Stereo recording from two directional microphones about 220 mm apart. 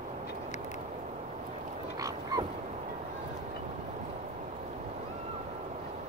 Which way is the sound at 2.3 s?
15° right (ahead or behind).